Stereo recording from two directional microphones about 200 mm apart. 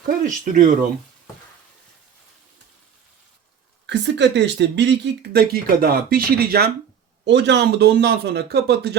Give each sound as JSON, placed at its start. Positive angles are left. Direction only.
{"t": 0.0, "sound": "speech", "side_deg": -40}
{"t": 3.8, "sound": "speech", "side_deg": -60}
{"t": 7.3, "sound": "a man's voice", "side_deg": -60}